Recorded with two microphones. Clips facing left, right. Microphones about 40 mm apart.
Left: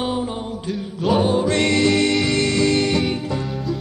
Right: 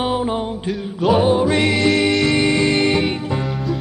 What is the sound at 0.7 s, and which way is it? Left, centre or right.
Music, centre.